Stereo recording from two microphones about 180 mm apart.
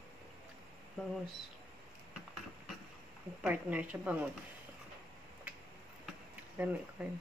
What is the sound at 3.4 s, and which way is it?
Speech, 10° right (ahead or behind).